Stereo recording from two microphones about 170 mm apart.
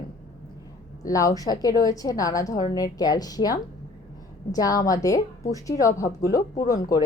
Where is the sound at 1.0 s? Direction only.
20° left (ahead or behind).